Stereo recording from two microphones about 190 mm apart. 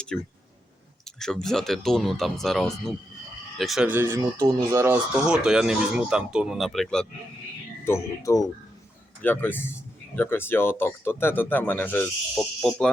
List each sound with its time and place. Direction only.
0.1 s speech: 5° left (ahead or behind)
7.9 s speech: 15° left (ahead or behind)